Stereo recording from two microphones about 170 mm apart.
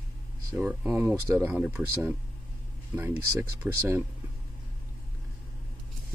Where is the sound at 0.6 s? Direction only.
10° right (ahead or behind).